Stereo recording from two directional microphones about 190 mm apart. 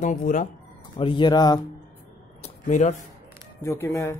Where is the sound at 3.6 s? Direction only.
15° left (ahead or behind).